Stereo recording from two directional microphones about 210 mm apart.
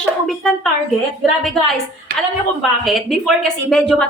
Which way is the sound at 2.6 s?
Centre (ahead or behind).